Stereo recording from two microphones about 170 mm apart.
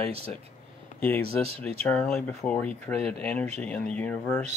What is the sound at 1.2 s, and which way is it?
Speech, 35° right (ahead or behind).